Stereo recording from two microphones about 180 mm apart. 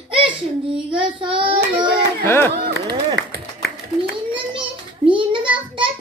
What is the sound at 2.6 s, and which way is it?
Run, 65° right (ahead or behind).